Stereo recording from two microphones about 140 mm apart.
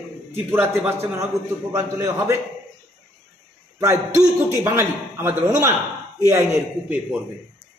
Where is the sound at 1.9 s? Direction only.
20° right (ahead or behind).